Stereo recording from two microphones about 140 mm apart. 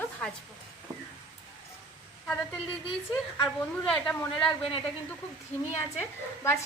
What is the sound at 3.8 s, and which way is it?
Speech, 5° left (ahead or behind).